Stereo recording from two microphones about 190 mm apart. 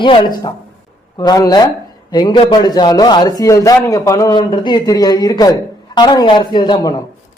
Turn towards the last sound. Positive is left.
turn(degrees=20)  # may be behind; listen again after turning